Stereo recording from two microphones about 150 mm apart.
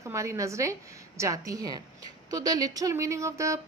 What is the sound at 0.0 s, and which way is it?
Speech, 20° right (ahead or behind).